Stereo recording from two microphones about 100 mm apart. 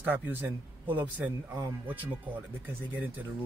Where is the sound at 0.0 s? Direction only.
20° right (ahead or behind).